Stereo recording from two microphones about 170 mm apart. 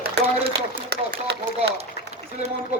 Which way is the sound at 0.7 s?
65° right (ahead or behind).